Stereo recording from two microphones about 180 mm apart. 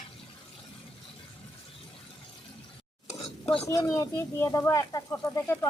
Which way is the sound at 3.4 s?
35° left (ahead or behind).